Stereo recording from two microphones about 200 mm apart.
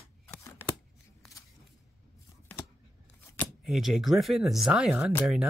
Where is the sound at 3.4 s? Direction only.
Centre (ahead or behind).